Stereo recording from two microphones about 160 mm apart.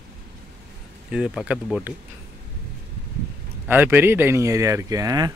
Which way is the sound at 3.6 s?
15° right (ahead or behind).